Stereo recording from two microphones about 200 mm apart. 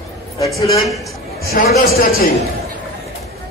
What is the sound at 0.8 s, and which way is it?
Speech, centre (ahead or behind).